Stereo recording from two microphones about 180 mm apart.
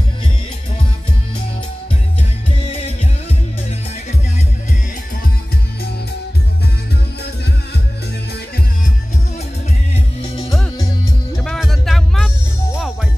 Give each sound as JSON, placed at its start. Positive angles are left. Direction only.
{"t": 9.9, "sound": "music", "side_deg": 30}
{"t": 11.4, "sound": "music", "side_deg": 0}